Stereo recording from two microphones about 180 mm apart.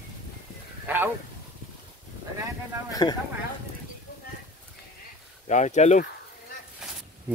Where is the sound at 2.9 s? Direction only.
20° left (ahead or behind).